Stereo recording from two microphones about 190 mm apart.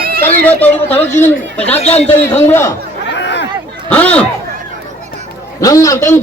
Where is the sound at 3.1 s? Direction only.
65° left (ahead or behind).